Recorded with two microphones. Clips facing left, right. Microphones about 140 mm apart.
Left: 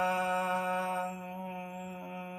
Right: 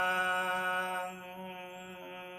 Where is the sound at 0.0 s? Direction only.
30° left (ahead or behind).